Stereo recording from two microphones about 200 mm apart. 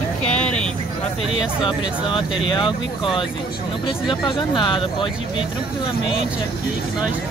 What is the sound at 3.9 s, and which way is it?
Speech, 25° left (ahead or behind).